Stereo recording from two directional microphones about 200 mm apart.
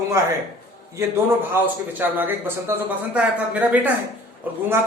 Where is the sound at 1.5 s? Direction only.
10° right (ahead or behind).